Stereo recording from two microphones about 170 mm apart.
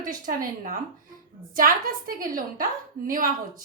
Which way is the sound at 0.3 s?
55° right (ahead or behind).